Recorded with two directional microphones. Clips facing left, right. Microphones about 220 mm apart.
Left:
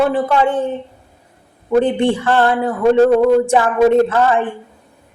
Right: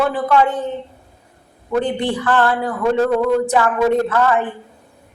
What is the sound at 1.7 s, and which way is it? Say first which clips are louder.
Speech: left 5 dB; 25° left (ahead or behind).